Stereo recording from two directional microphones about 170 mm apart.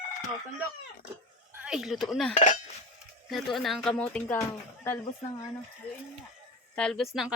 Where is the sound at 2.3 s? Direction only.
45° left (ahead or behind).